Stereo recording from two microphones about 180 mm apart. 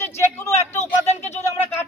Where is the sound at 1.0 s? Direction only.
35° left (ahead or behind).